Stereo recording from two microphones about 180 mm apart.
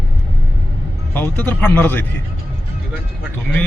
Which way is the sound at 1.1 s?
10° left (ahead or behind).